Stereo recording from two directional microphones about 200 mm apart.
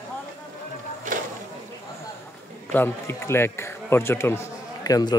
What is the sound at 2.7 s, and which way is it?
Speech, 10° left (ahead or behind).